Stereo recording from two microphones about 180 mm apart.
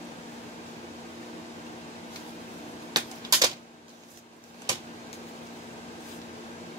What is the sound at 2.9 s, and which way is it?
Typewriter, 20° right (ahead or behind).